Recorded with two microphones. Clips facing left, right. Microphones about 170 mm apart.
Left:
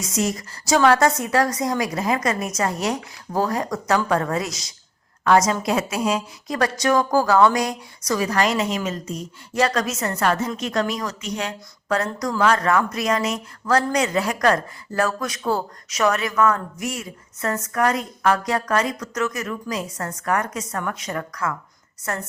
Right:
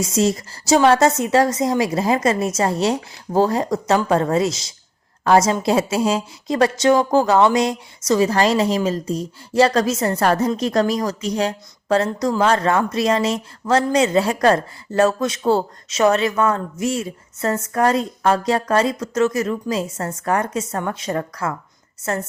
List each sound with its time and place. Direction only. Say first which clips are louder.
0.0 s speech: right 5 dB; 30° right (ahead or behind)